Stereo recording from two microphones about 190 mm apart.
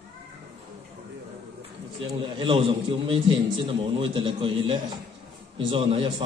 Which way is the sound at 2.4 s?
25° right (ahead or behind).